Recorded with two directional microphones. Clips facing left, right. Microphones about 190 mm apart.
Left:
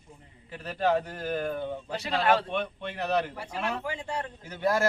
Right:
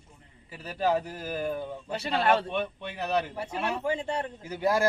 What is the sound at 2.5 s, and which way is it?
Speech, 5° right (ahead or behind).